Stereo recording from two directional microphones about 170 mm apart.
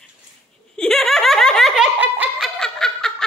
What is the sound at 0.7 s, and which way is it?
Giggle, 5° left (ahead or behind).